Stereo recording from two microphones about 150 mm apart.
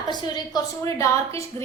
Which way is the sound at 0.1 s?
25° left (ahead or behind).